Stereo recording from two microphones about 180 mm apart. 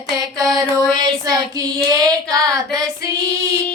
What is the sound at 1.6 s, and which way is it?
Child singing, 20° right (ahead or behind).